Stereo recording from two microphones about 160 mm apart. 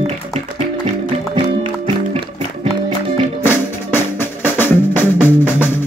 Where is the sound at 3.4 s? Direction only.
15° left (ahead or behind).